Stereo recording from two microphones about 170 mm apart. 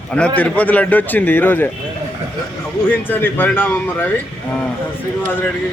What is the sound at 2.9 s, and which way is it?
Speech, 10° left (ahead or behind).